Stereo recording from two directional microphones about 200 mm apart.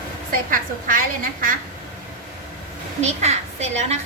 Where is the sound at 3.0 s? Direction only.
35° right (ahead or behind).